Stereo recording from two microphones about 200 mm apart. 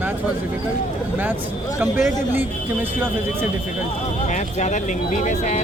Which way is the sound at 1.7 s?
5° right (ahead or behind).